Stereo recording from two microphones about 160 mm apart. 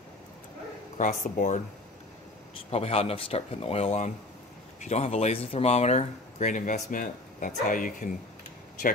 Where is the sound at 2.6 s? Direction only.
40° left (ahead or behind).